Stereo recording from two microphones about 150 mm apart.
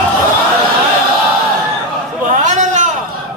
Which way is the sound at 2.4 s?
55° right (ahead or behind).